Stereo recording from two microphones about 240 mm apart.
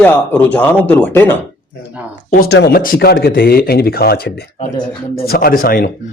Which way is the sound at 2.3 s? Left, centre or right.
Left.